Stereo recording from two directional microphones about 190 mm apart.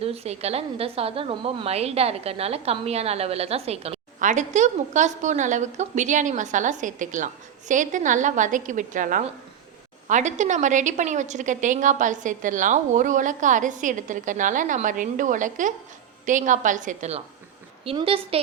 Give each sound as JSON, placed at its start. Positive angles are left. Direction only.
{"t": 0.0, "sound": "a woman's voice", "side_deg": -30}